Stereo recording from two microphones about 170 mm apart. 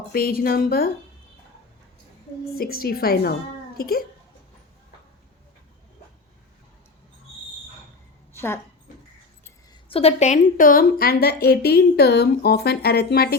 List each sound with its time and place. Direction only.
0.1 s speech: 60° left (ahead or behind)
2.6 s speech: 65° left (ahead or behind)
8.3 s a sound: 15° left (ahead or behind)
9.9 s a woman's voice: 35° left (ahead or behind); by 13.3 s 70° left (ahead or behind)